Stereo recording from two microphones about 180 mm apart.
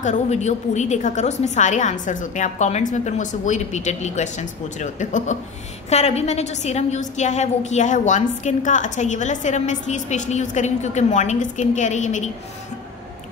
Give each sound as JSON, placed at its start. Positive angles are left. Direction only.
{"t": 0.0, "sound": "a woman's voice", "side_deg": 40}